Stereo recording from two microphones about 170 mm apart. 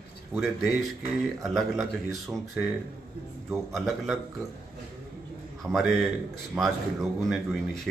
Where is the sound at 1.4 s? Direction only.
Centre (ahead or behind).